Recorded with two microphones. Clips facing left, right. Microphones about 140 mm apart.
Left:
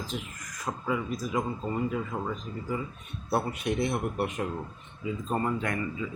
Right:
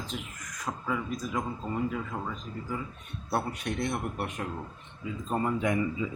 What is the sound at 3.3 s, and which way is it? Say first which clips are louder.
Speech: left 3 dB; 5° left (ahead or behind).